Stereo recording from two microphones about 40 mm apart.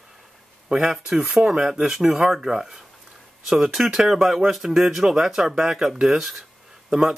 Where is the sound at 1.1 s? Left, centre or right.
Centre.